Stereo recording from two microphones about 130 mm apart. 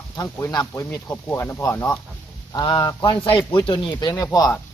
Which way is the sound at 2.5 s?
35° left (ahead or behind).